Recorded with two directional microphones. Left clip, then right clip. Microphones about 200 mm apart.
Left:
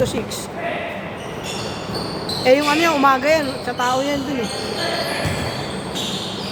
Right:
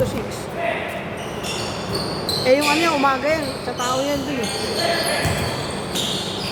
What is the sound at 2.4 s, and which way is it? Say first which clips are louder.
Speech: left 2 dB; 30° left (ahead or behind).